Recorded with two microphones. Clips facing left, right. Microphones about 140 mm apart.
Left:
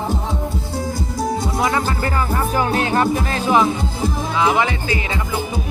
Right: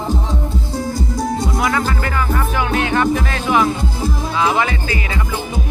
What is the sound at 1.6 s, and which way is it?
Music, 25° left (ahead or behind).